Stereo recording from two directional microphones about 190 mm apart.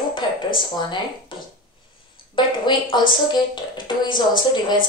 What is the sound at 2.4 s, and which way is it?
A woman's voice, 25° left (ahead or behind).